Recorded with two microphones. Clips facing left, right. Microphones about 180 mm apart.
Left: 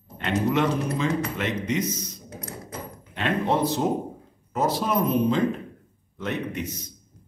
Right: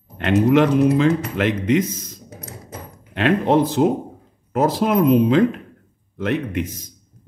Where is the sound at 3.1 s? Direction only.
90° right.